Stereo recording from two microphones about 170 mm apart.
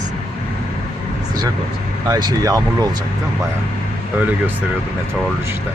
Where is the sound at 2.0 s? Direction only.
20° right (ahead or behind).